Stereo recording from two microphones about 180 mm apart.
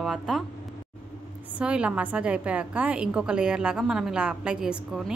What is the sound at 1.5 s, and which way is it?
A woman's voice, 5° right (ahead or behind).